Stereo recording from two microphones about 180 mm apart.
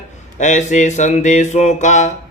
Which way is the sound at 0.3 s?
40° left (ahead or behind).